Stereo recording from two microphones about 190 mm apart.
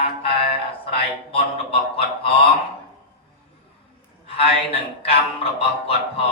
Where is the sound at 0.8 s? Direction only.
30° left (ahead or behind).